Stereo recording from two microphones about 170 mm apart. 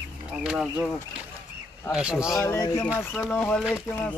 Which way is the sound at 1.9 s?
5° right (ahead or behind).